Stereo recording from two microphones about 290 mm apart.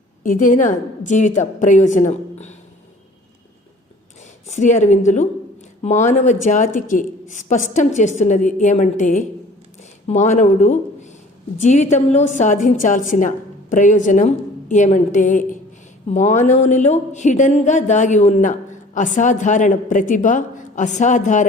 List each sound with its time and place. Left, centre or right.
0.2 s a woman's voice: left
4.4 s a woman's voice: left